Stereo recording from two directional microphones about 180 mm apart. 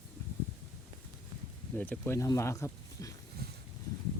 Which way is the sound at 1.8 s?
10° left (ahead or behind).